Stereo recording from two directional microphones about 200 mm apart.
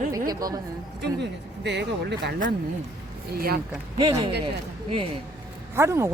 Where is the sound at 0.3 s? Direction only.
20° right (ahead or behind).